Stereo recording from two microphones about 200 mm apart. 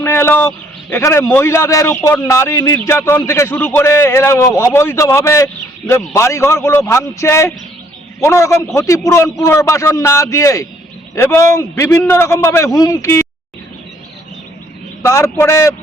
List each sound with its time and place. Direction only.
0.0 s a man's voice: 10° left (ahead or behind)
15.0 s a man's voice: 15° left (ahead or behind)